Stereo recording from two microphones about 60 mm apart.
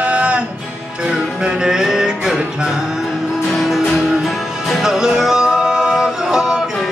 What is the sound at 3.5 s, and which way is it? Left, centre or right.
Music, centre.